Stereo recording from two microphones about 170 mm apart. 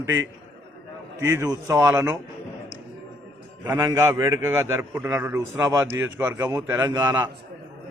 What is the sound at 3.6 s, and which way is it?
A man's voice, 10° right (ahead or behind).